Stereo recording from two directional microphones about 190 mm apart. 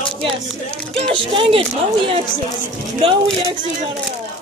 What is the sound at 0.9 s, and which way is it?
Speech, 30° right (ahead or behind).